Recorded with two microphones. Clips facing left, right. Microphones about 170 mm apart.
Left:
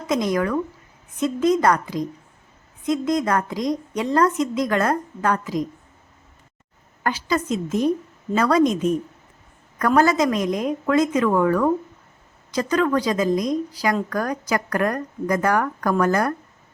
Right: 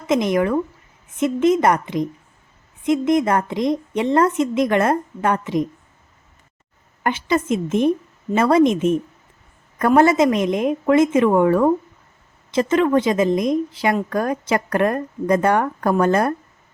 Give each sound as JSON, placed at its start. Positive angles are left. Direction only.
{"t": 0.1, "sound": "a woman's voice", "side_deg": -25}
{"t": 7.0, "sound": "a woman's voice", "side_deg": -25}